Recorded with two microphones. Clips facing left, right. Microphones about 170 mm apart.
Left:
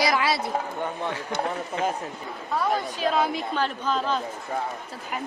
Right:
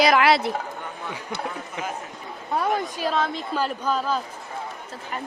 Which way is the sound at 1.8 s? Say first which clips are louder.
Left 5 dB; 15° right (ahead or behind).